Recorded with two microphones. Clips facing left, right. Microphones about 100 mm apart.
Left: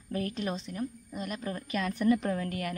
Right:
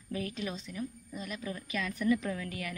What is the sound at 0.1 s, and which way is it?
A woman's voice, 45° left (ahead or behind).